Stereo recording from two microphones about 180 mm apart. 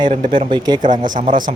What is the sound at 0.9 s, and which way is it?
Speech, 45° right (ahead or behind).